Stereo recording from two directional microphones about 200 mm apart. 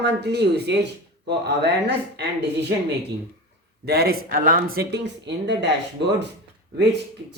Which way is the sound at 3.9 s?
50° right (ahead or behind).